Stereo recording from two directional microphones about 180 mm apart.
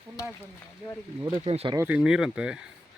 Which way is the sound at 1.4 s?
35° right (ahead or behind).